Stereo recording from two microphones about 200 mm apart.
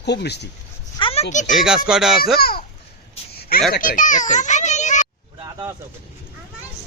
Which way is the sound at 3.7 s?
45° left (ahead or behind).